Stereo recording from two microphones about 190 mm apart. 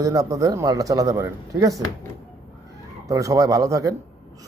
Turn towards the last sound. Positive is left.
turn(degrees=-15)  # may be behind; listen again after turning